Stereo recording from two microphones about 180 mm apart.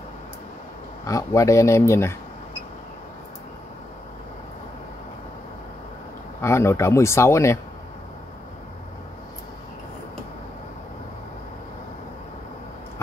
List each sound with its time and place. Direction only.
1.0 s speech: 20° left (ahead or behind)
6.4 s speech: 15° left (ahead or behind)